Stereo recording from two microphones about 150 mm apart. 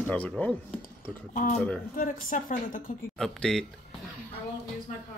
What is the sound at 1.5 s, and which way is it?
Speech, 10° left (ahead or behind).